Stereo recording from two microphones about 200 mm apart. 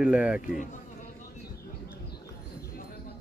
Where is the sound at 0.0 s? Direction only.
5° right (ahead or behind).